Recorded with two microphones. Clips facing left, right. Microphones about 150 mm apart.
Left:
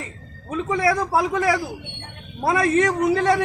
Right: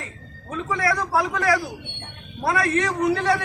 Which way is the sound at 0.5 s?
20° left (ahead or behind).